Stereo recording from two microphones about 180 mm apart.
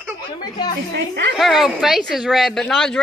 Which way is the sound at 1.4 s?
Centre (ahead or behind).